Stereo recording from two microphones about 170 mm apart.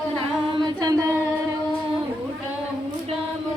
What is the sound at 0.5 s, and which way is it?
Music, 25° right (ahead or behind).